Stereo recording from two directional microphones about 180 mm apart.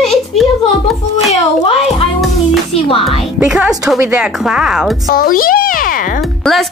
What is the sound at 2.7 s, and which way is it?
Music, 30° left (ahead or behind).